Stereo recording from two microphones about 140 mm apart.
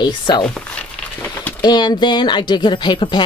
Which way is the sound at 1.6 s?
30° left (ahead or behind).